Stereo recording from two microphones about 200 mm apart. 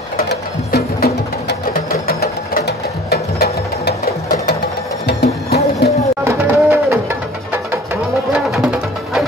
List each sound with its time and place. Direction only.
0.3 s music: 50° left (ahead or behind)
6.2 s music: 15° right (ahead or behind)